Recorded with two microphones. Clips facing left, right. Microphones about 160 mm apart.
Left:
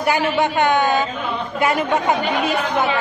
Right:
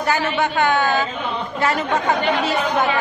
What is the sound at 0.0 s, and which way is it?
A woman's voice, 15° left (ahead or behind).